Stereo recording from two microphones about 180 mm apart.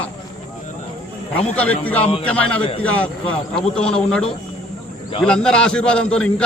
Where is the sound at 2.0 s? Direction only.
30° left (ahead or behind).